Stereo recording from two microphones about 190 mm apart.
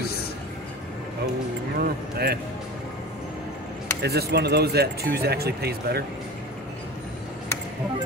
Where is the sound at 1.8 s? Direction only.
55° right (ahead or behind).